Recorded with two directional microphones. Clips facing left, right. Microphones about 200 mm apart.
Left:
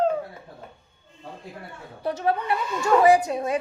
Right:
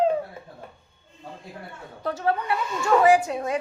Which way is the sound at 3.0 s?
35° left (ahead or behind).